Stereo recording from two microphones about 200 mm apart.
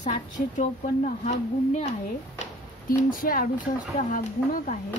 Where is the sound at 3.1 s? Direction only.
45° left (ahead or behind).